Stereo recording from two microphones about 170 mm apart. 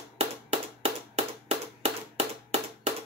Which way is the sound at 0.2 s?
40° right (ahead or behind).